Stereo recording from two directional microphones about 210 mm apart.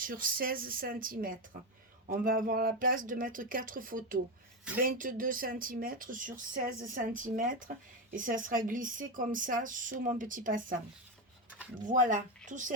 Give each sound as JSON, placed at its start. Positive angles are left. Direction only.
{"t": 0.0, "sound": "speech", "side_deg": -40}
{"t": 11.9, "sound": "speech", "side_deg": -35}